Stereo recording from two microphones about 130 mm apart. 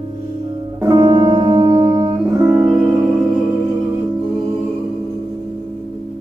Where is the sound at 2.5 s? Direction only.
20° right (ahead or behind).